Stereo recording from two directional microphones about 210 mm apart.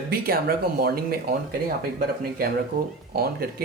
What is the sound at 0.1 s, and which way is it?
Speech, 45° right (ahead or behind).